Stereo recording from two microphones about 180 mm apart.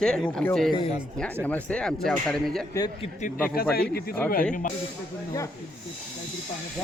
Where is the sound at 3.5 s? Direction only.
55° left (ahead or behind).